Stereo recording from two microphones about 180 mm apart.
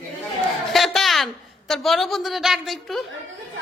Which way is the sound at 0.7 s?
Centre (ahead or behind).